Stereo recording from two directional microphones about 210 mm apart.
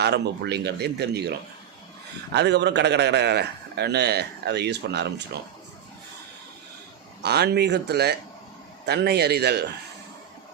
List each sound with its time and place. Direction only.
0.0 s a man's voice: 50° right (ahead or behind)
2.3 s a man's voice: 55° right (ahead or behind)
7.2 s a man's voice: 50° right (ahead or behind)